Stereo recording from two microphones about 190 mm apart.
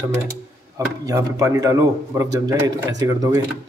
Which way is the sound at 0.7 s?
15° right (ahead or behind).